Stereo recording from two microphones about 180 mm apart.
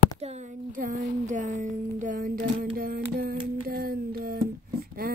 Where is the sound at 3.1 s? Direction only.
55° right (ahead or behind).